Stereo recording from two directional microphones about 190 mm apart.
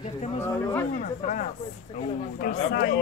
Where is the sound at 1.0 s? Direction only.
45° left (ahead or behind).